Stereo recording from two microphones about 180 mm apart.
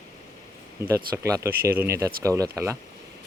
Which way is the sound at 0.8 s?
15° right (ahead or behind).